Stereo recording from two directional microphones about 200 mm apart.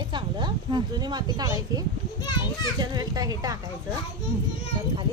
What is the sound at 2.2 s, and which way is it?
Speech, 20° left (ahead or behind).